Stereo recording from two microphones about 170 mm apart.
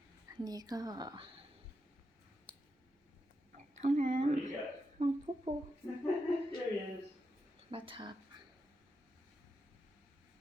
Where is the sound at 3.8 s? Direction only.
40° right (ahead or behind).